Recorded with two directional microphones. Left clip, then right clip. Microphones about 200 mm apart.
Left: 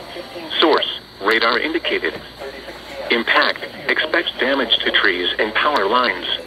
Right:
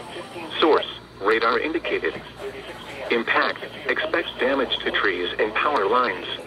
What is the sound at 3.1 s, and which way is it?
Speech, 20° left (ahead or behind).